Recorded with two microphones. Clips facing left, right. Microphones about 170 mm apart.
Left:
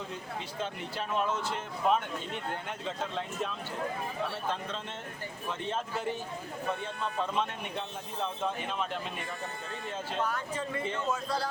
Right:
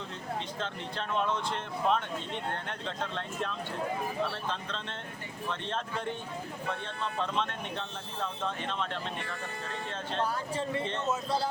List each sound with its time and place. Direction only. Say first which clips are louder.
0.6 s speech: left 1 dB; 5° left (ahead or behind)
5.5 s speech: left 1 dB; 5° left (ahead or behind)
10.2 s speech: right 1 dB; 35° right (ahead or behind)